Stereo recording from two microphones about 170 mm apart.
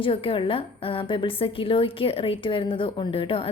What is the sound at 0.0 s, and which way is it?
A woman's voice, 30° left (ahead or behind).